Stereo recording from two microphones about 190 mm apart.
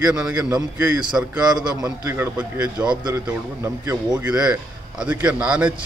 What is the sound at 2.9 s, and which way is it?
A man's voice, 20° right (ahead or behind).